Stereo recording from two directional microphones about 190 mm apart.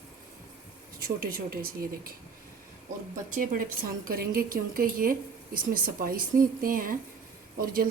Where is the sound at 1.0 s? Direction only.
50° right (ahead or behind).